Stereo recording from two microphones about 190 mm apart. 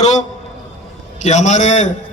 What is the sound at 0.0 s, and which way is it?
A man's voice, 40° left (ahead or behind).